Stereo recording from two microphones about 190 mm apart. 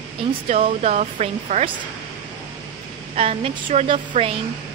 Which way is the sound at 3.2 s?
30° right (ahead or behind).